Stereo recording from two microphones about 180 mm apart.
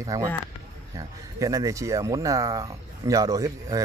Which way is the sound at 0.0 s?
20° right (ahead or behind).